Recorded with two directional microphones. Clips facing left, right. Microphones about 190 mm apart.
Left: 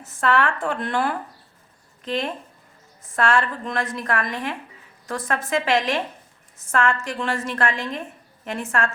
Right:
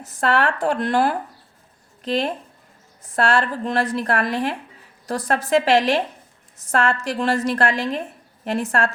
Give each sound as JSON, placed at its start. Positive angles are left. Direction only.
{"t": 0.0, "sound": "a woman's voice", "side_deg": -40}